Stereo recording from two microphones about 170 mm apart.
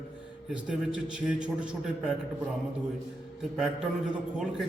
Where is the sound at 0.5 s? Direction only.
5° right (ahead or behind).